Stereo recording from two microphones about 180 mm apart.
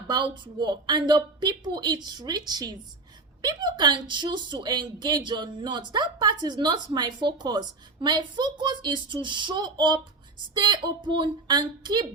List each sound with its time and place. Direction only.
0.1 s speech: 25° right (ahead or behind)